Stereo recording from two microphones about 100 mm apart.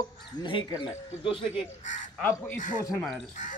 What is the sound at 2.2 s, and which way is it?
Speech, 20° left (ahead or behind).